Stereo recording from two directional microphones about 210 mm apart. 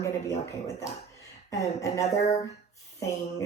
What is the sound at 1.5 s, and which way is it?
Speech, 15° left (ahead or behind).